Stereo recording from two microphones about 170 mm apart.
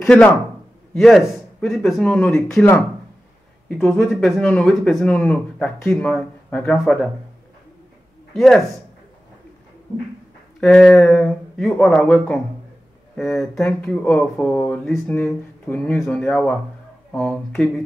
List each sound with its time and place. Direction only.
0.0 s a man's voice: 5° left (ahead or behind)
8.3 s speech: 5° left (ahead or behind)
10.6 s speech: 5° left (ahead or behind)
17.5 s a sound: 5° left (ahead or behind)